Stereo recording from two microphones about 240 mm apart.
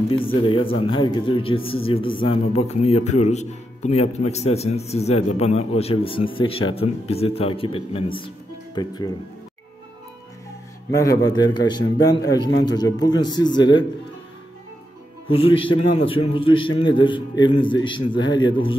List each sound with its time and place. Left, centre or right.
0.2 s speech: left
10.9 s speech: centre
15.3 s speech: left